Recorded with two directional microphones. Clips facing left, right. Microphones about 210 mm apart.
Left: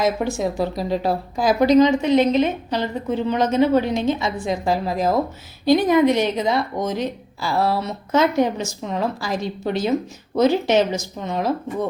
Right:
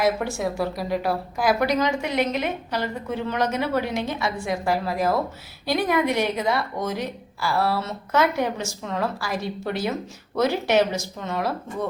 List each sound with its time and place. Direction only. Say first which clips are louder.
0.0 s a woman's voice: left 2 dB; 20° left (ahead or behind)